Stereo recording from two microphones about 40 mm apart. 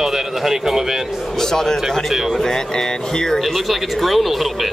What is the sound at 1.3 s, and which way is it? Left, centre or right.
Speech, centre.